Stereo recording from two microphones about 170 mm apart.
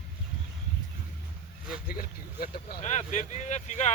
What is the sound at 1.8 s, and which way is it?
Vehicle, 60° left (ahead or behind).